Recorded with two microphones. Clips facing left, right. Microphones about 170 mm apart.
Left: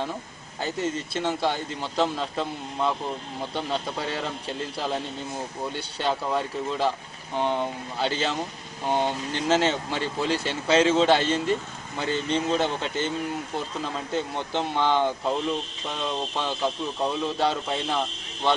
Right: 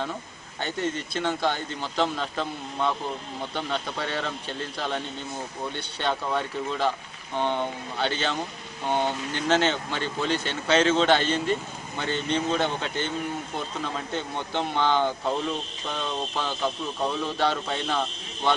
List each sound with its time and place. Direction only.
0.6 s speech: 5° left (ahead or behind)
5.7 s speech: 5° left (ahead or behind)
14.1 s speech: centre (ahead or behind)